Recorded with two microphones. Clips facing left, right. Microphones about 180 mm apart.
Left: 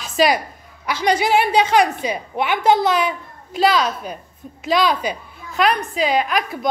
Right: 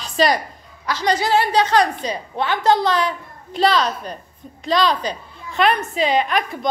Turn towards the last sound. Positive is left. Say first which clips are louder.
# even
turn(degrees=5)  # may be behind; listen again after turning